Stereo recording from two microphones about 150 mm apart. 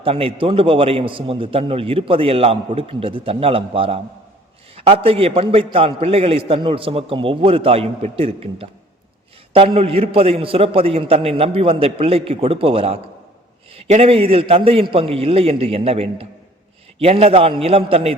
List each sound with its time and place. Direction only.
0.0 s a man's voice: 40° right (ahead or behind)